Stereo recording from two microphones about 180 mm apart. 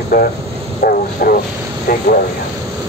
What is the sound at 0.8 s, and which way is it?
Bow-wow, 55° left (ahead or behind).